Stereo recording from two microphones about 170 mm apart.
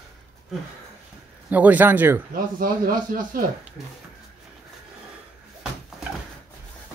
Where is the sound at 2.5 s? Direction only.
55° right (ahead or behind).